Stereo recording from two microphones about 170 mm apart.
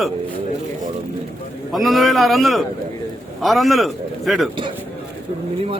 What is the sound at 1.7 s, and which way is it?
A man's voice, centre (ahead or behind).